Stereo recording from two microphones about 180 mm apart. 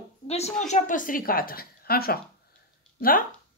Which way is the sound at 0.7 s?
45° left (ahead or behind).